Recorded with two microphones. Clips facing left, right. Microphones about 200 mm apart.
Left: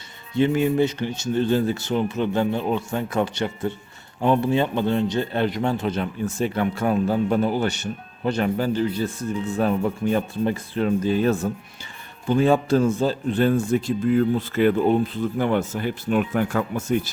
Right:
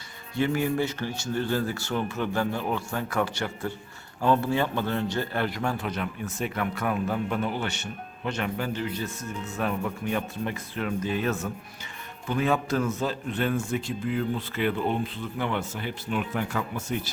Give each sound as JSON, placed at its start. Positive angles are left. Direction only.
{"t": 0.3, "sound": "a man's voice", "side_deg": 20}